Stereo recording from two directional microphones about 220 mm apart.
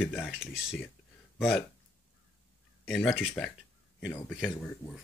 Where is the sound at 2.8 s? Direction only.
Centre (ahead or behind).